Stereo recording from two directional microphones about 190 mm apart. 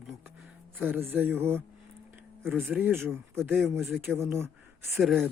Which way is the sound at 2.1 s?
10° right (ahead or behind).